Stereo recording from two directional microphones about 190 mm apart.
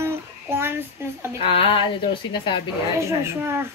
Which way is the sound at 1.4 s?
30° left (ahead or behind).